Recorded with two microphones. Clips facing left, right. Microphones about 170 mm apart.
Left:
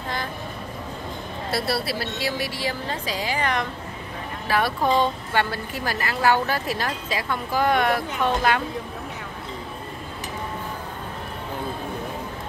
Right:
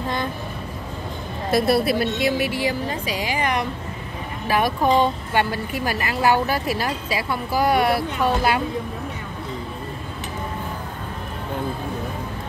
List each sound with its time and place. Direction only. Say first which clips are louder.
1.5 s a woman's voice: right 8 dB; 20° right (ahead or behind)